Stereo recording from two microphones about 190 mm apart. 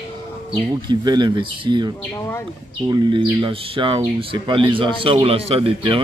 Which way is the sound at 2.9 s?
25° right (ahead or behind).